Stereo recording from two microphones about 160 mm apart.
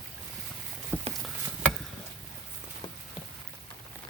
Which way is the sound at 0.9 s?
10° right (ahead or behind).